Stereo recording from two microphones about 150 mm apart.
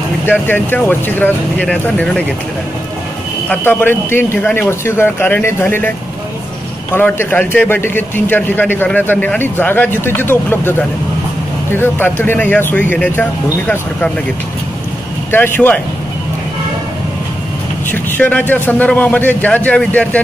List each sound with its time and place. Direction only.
0.3 s a man's voice: 15° left (ahead or behind)
3.4 s a man's voice: 15° left (ahead or behind)
15.3 s a man's voice: 15° left (ahead or behind)
18.1 s a man's voice: 10° left (ahead or behind)